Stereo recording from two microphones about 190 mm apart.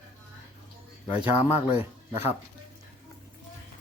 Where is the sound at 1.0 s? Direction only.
30° left (ahead or behind).